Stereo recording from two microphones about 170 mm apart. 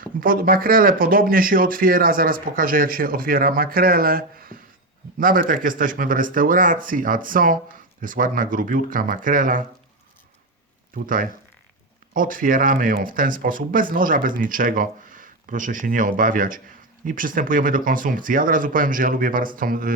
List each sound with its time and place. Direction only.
0.0 s speech: 55° right (ahead or behind)
10.9 s speech: 55° right (ahead or behind)